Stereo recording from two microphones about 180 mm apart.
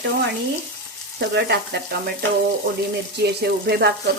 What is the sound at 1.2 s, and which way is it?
Frying, 70° right (ahead or behind).